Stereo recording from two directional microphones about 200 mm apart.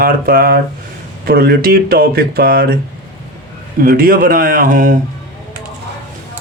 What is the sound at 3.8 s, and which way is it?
Speech, 45° right (ahead or behind).